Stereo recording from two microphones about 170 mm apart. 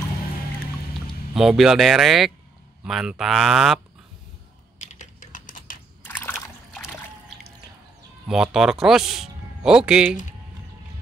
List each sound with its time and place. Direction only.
1.3 s speech: centre (ahead or behind)
4.7 s typing: 45° left (ahead or behind)
6.0 s a sound: 10° left (ahead or behind)
8.3 s speech: 5° right (ahead or behind)